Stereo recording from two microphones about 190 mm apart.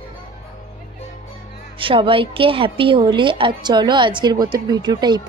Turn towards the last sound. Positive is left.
turn(degrees=-20)  # may be behind; listen again after turning